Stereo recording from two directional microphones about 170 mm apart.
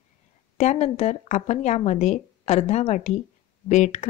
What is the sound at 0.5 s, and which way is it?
A woman's voice, 40° left (ahead or behind).